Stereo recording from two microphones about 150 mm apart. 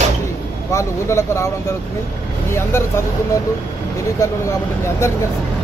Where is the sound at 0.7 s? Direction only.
20° left (ahead or behind).